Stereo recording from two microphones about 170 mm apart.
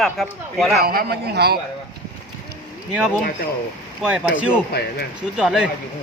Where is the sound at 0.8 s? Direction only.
65° right (ahead or behind).